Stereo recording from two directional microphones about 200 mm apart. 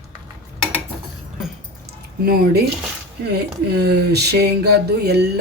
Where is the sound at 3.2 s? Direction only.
55° right (ahead or behind).